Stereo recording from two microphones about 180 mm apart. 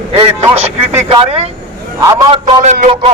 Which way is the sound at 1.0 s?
35° right (ahead or behind).